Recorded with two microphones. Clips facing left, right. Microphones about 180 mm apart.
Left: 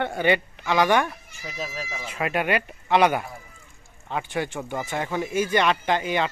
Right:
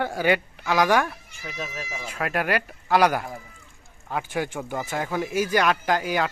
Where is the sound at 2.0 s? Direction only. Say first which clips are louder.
Left 1 dB; centre (ahead or behind).